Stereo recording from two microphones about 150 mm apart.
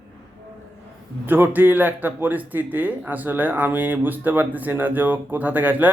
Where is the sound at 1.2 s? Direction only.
15° right (ahead or behind).